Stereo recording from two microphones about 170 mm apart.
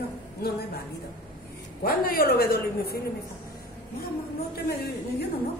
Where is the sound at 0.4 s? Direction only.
65° left (ahead or behind).